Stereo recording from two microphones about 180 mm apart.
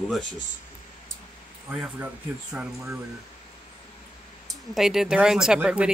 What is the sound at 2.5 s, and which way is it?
Speech, 15° right (ahead or behind).